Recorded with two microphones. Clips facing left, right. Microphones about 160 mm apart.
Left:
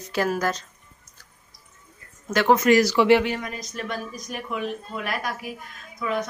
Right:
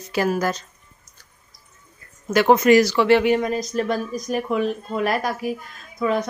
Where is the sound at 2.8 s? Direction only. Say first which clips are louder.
Right 1 dB; 10° left (ahead or behind).